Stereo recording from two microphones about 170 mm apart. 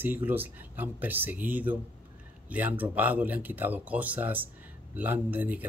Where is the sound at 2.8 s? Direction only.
10° right (ahead or behind).